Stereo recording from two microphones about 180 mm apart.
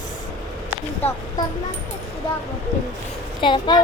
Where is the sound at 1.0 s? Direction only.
10° left (ahead or behind).